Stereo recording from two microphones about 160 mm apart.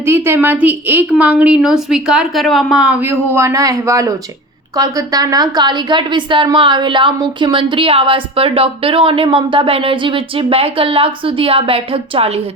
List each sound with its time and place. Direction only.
0.0 s a woman's voice: 15° right (ahead or behind); by 12.4 s 35° right (ahead or behind)